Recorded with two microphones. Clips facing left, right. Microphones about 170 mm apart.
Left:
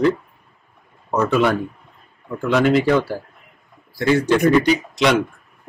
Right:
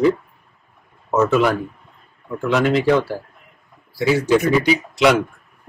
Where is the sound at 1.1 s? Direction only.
Centre (ahead or behind).